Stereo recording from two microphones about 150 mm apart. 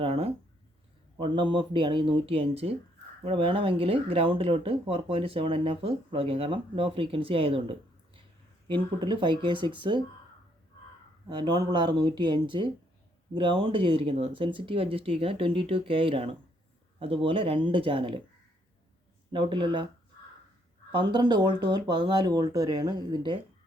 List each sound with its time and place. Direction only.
0.0 s a sound: 40° right (ahead or behind)
1.2 s speech: 35° right (ahead or behind)
11.3 s speech: 30° right (ahead or behind)
19.3 s speech: 30° right (ahead or behind)
20.9 s speech: 30° right (ahead or behind)